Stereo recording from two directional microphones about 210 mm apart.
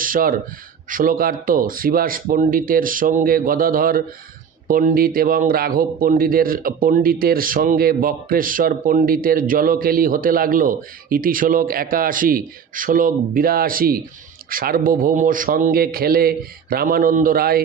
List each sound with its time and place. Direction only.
0.0 s a man's voice: 40° right (ahead or behind)